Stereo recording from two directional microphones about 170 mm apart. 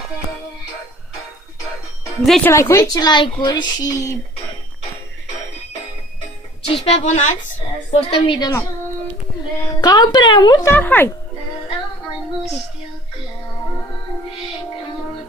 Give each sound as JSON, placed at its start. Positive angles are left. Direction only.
{"t": 2.2, "sound": "speech", "side_deg": 0}
{"t": 2.5, "sound": "speech", "side_deg": 15}
{"t": 6.7, "sound": "a woman's voice", "side_deg": 40}
{"t": 8.1, "sound": "speech", "side_deg": 25}
{"t": 9.7, "sound": "speech", "side_deg": 25}